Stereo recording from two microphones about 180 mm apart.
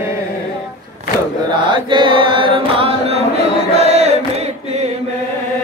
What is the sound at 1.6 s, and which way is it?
Chant, 25° right (ahead or behind).